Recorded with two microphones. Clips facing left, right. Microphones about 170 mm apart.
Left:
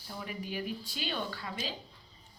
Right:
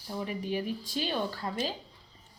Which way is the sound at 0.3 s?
35° right (ahead or behind).